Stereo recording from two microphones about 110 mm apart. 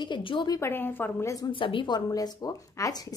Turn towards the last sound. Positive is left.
turn(degrees=30)  # may be behind; listen again after turning